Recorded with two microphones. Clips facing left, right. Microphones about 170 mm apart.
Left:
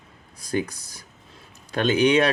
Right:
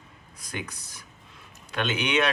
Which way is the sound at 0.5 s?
35° left (ahead or behind).